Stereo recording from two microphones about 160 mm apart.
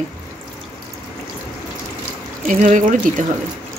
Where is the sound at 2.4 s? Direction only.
50° right (ahead or behind).